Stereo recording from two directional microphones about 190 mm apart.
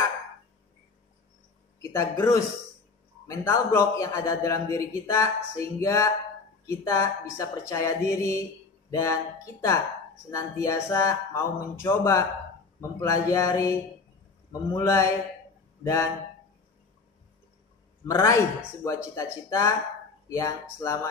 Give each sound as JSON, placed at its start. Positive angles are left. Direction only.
{"t": 2.0, "sound": "a man's voice", "side_deg": 15}
{"t": 14.8, "sound": "a man's voice", "side_deg": 15}
{"t": 18.0, "sound": "a man's voice", "side_deg": 15}